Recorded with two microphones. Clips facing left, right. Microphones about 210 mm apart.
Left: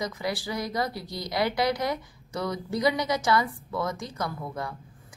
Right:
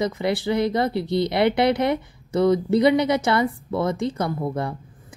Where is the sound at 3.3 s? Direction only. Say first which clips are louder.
Right 4 dB; 25° right (ahead or behind).